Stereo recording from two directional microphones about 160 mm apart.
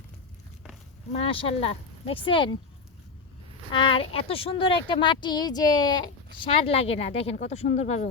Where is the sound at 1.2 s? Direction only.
35° left (ahead or behind).